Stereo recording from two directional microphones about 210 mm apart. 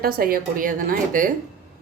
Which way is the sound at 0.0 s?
45° right (ahead or behind).